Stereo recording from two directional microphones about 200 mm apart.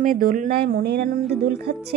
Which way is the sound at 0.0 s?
45° right (ahead or behind).